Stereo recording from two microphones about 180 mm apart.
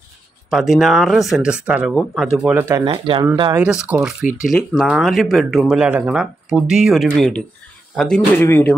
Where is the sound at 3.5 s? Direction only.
10° right (ahead or behind).